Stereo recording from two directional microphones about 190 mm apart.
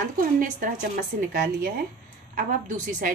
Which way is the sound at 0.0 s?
45° right (ahead or behind).